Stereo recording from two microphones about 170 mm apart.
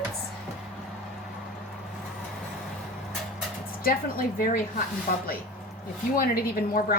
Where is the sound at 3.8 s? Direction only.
55° left (ahead or behind).